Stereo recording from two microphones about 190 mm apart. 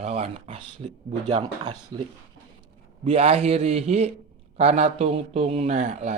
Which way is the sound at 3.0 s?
30° right (ahead or behind).